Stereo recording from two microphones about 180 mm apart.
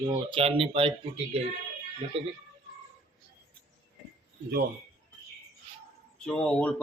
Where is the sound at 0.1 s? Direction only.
30° right (ahead or behind).